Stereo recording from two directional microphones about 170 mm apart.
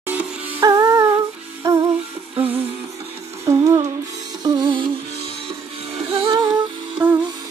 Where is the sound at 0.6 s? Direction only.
20° right (ahead or behind).